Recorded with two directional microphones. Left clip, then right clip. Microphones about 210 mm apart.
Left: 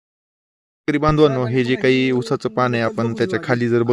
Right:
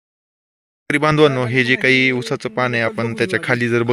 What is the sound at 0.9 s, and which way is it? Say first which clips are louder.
Speech: right 2 dB; 5° left (ahead or behind).